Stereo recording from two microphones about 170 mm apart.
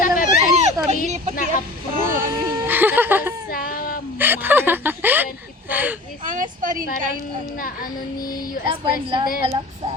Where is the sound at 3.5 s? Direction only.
60° left (ahead or behind).